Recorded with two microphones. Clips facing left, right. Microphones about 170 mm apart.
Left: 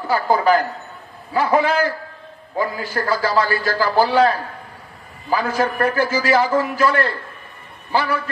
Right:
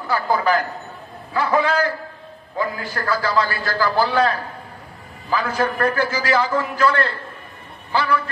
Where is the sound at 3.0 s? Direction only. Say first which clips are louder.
Left 4 dB; 35° left (ahead or behind).